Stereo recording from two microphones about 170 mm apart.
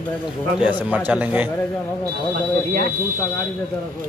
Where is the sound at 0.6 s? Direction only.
10° right (ahead or behind).